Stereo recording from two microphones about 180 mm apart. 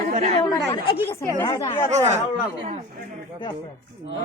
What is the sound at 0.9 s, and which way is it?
Speech, 30° left (ahead or behind).